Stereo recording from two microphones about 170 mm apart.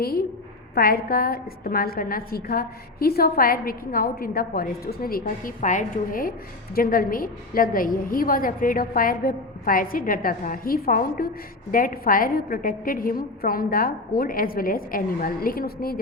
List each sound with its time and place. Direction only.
0.7 s a woman's voice: 60° left (ahead or behind)